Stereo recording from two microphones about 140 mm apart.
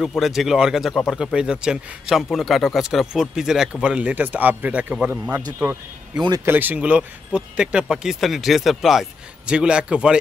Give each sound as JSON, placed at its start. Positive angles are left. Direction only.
{"t": 0.0, "sound": "speech", "side_deg": 0}
{"t": 6.4, "sound": "speech", "side_deg": -15}